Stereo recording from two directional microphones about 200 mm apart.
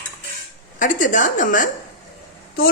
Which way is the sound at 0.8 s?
40° left (ahead or behind).